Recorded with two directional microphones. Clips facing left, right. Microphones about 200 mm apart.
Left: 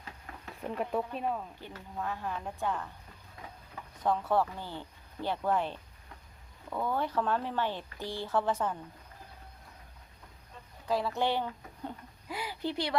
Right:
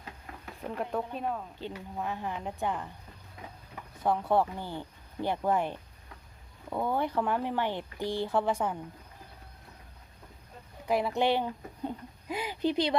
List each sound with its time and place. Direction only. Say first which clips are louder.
0.6 s speech: even; 5° left (ahead or behind)
1.5 s speech: right 4 dB; 15° right (ahead or behind)
4.0 s speech: right 2 dB; 15° right (ahead or behind)
10.8 s speech: right 3 dB; 15° right (ahead or behind)